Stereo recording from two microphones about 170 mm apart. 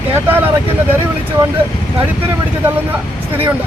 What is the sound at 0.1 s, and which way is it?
Speech, 10° right (ahead or behind).